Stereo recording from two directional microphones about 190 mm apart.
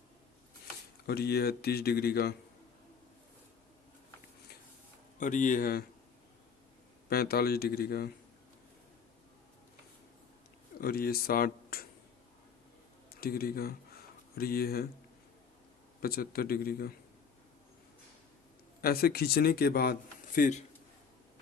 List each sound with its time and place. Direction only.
1.0 s speech: 55° left (ahead or behind)
5.2 s speech: 40° left (ahead or behind)
7.1 s speech: 55° left (ahead or behind)
10.8 s speech: 55° left (ahead or behind)
13.1 s speech: 55° left (ahead or behind)
16.0 s speech: 50° left (ahead or behind)
18.8 s speech: 50° left (ahead or behind)